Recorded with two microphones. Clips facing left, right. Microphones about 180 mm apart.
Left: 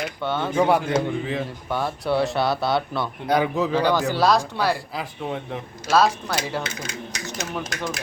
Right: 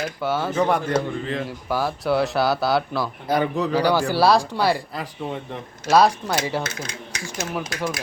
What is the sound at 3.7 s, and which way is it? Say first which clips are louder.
Speech: right 2 dB; 10° right (ahead or behind).